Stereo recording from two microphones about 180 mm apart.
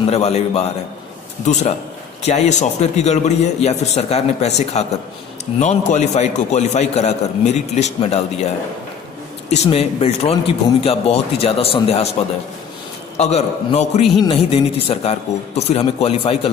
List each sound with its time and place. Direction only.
0.1 s a man's voice: 35° left (ahead or behind)
9.5 s a man's voice: 35° left (ahead or behind)
13.2 s a man's voice: 35° left (ahead or behind)